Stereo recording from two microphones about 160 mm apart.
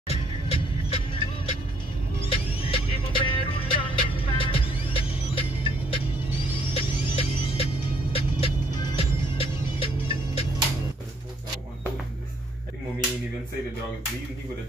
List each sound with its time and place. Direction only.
0.1 s music: 35° left (ahead or behind)